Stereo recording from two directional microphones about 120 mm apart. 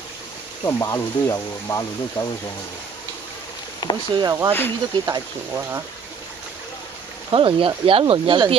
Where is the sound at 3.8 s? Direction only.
35° left (ahead or behind).